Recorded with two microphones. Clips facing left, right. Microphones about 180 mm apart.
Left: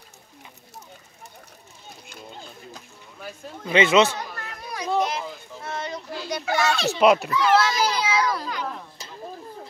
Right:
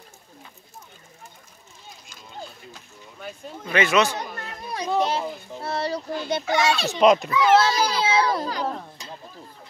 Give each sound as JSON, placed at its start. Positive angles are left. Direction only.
{"t": 3.2, "sound": "speech", "side_deg": 0}
{"t": 3.7, "sound": "speech", "side_deg": 25}
{"t": 4.4, "sound": "children playing", "side_deg": -25}
{"t": 5.0, "sound": "a child's voice", "side_deg": -30}
{"t": 6.2, "sound": "a child's voice", "side_deg": -25}
{"t": 7.0, "sound": "a child's voice", "side_deg": 5}
{"t": 7.5, "sound": "a child's voice", "side_deg": -30}